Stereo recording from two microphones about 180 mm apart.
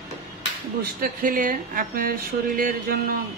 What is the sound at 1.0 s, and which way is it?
Speech, 50° right (ahead or behind).